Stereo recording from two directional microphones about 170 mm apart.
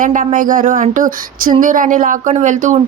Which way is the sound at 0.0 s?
50° right (ahead or behind).